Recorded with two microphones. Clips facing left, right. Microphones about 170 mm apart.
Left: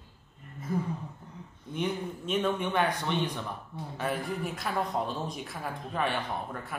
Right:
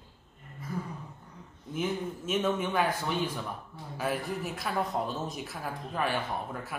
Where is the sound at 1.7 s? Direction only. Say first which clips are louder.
Even; centre (ahead or behind).